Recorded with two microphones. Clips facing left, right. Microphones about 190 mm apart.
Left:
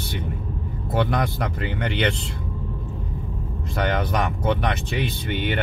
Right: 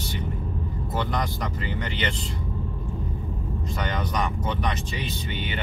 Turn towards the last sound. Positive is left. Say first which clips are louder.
# left 6 dB
turn(degrees=60)  # may be behind; listen again after turning